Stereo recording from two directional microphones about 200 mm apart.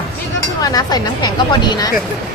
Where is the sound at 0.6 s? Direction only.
20° left (ahead or behind).